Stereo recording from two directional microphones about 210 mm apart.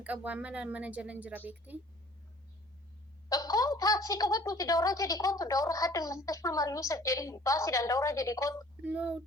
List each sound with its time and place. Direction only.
0.0 s speech: 5° right (ahead or behind)
3.2 s a woman's voice: 15° left (ahead or behind)
8.8 s speech: 5° right (ahead or behind)